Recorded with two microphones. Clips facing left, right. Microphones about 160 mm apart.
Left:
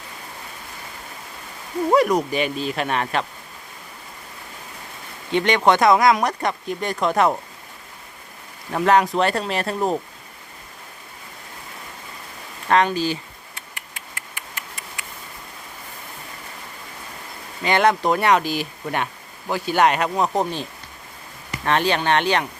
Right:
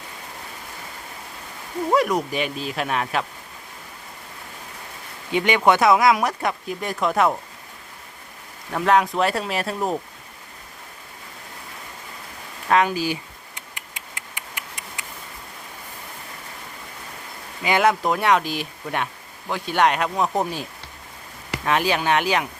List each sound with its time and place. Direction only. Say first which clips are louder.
1.9 s speech: left 3 dB; centre (ahead or behind)
5.3 s speech: left 1 dB; 10° right (ahead or behind)
8.7 s speech: left 2 dB; centre (ahead or behind)
12.6 s speech: left 1 dB; 5° right (ahead or behind)
13.6 s a sound: even; 20° right (ahead or behind)
17.6 s speech: left 1 dB; 5° right (ahead or behind)